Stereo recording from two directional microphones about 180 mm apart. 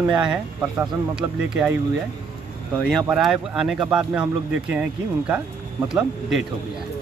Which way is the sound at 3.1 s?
5° right (ahead or behind).